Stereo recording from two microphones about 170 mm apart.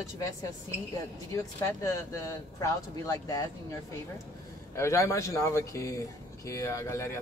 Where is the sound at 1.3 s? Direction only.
20° left (ahead or behind).